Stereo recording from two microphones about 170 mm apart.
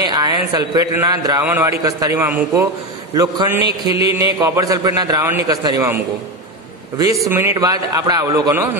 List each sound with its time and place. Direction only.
0.0 s a man's voice: 25° right (ahead or behind)
7.0 s a man's voice: 20° right (ahead or behind)